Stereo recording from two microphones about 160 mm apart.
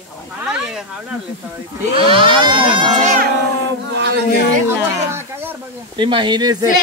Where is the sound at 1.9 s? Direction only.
30° right (ahead or behind).